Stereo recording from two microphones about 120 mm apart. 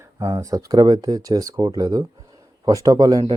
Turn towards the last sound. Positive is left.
turn(degrees=-35)  # may be behind; listen again after turning